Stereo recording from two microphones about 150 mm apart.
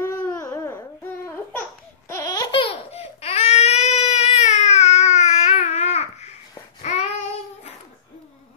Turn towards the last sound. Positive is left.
turn(degrees=45)  # may be behind; listen again after turning